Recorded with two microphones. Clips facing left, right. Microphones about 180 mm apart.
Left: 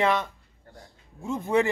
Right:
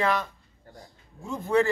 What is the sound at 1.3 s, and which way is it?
Speech, 20° left (ahead or behind).